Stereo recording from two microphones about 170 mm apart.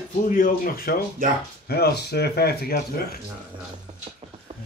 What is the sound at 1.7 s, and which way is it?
Speech, 75° left (ahead or behind).